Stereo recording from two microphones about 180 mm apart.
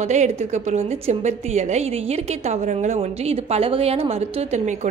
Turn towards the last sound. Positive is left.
turn(degrees=-40)  # may be behind; listen again after turning